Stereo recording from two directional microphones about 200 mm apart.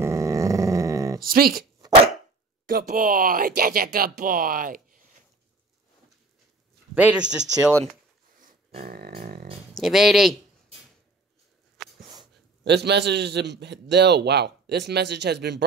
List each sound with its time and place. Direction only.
0.0 s growling: 15° right (ahead or behind)
1.2 s speech: 45° right (ahead or behind)
7.0 s speech: 5° right (ahead or behind)
8.4 s a sound: 40° right (ahead or behind)
9.8 s speech: centre (ahead or behind)
11.8 s a sound: centre (ahead or behind)
12.6 s a man's voice: 60° right (ahead or behind)